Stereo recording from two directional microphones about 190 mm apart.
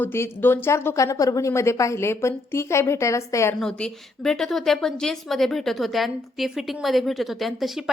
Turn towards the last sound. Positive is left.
turn(degrees=0)  # may be behind; listen again after turning